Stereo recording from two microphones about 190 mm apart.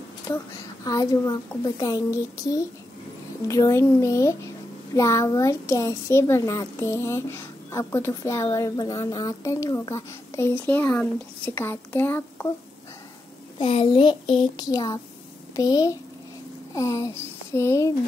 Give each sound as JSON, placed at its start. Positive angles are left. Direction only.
{"t": 0.8, "sound": "a child's voice", "side_deg": 20}
{"t": 13.6, "sound": "child singing", "side_deg": 30}
{"t": 16.7, "sound": "speech", "side_deg": 15}